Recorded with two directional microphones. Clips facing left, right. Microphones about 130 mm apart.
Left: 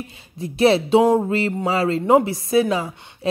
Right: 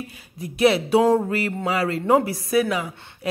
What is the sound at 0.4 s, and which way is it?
Speech, 30° left (ahead or behind).